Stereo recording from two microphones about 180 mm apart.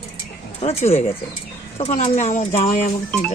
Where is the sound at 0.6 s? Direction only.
35° left (ahead or behind).